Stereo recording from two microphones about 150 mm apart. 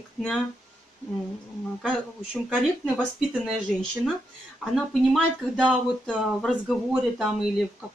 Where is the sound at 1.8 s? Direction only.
Centre (ahead or behind).